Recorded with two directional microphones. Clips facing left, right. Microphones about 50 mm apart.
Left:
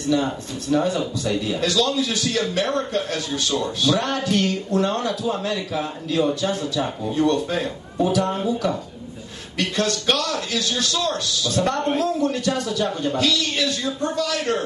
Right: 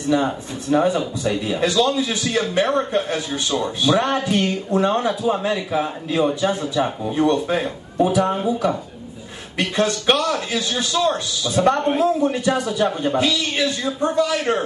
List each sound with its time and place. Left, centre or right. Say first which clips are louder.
0.1 s a man's voice: right 2 dB; right